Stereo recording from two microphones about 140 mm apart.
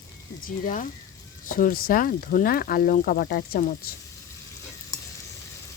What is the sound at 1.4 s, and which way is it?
Speech, 75° left (ahead or behind).